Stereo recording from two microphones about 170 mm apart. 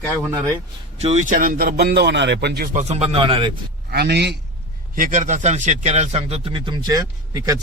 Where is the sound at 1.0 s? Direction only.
45° right (ahead or behind); by 2.7 s 70° right (ahead or behind).